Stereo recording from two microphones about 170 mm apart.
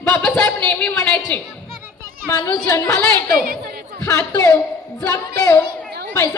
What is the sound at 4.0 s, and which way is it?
Speech, 15° left (ahead or behind).